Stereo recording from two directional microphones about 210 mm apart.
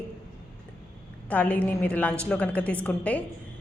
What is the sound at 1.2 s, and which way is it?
A woman's voice, 5° left (ahead or behind).